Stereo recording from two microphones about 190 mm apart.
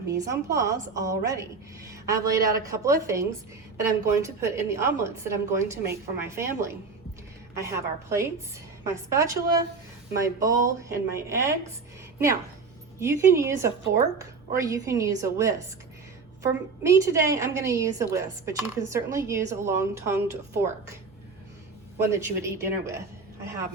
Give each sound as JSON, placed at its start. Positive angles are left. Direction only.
{"t": 0.1, "sound": "a woman's voice", "side_deg": -15}
{"t": 13.0, "sound": "a woman's voice", "side_deg": -15}
{"t": 21.9, "sound": "a woman's voice", "side_deg": -15}